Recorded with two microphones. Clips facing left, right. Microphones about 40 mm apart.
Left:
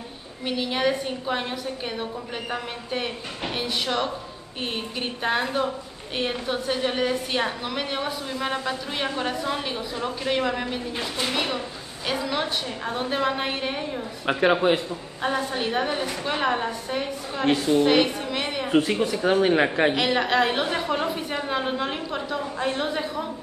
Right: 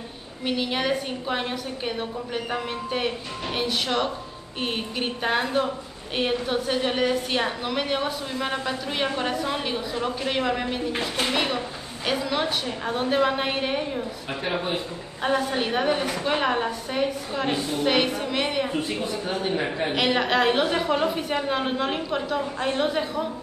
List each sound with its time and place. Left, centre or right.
0.5 s a woman's voice: centre
14.4 s speech: left
15.2 s a woman's voice: centre
18.8 s speech: left
19.9 s a woman's voice: centre